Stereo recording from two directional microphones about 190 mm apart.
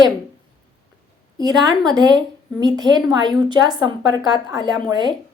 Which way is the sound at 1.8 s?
20° right (ahead or behind).